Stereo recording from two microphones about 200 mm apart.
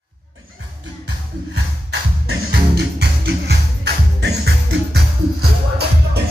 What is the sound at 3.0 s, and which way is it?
Music, 55° right (ahead or behind).